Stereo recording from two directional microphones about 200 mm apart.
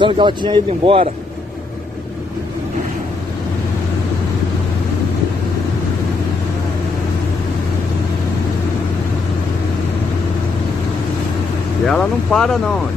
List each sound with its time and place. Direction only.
0.0 s a man's voice: 25° right (ahead or behind)
11.8 s speech: centre (ahead or behind)